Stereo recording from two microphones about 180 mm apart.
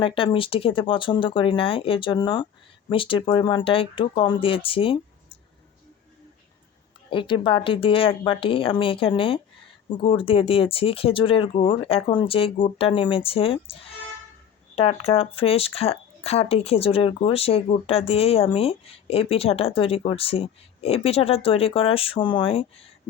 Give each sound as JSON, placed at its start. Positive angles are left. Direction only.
{"t": 0.0, "sound": "speech", "side_deg": 30}
{"t": 7.1, "sound": "speech", "side_deg": 25}
{"t": 14.8, "sound": "speech", "side_deg": 30}